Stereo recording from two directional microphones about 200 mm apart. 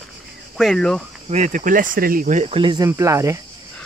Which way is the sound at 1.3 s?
40° right (ahead or behind).